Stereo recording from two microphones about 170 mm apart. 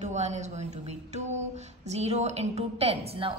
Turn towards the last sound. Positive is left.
turn(degrees=-35)  # may be behind; listen again after turning